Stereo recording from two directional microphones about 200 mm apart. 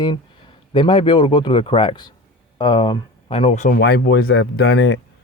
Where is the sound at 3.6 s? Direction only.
50° left (ahead or behind).